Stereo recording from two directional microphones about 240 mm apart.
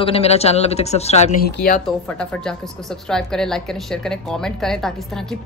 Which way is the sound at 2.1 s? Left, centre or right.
Centre.